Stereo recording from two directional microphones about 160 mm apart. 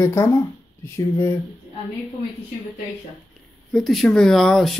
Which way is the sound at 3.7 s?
Centre (ahead or behind).